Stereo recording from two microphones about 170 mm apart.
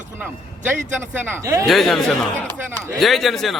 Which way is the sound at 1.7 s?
Centre (ahead or behind).